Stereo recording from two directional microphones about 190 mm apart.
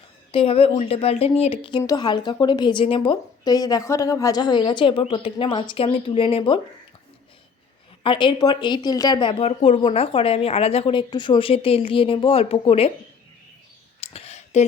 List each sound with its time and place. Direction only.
0.3 s speech: 30° left (ahead or behind)
8.0 s speech: 25° left (ahead or behind)
14.0 s a sound: 30° left (ahead or behind)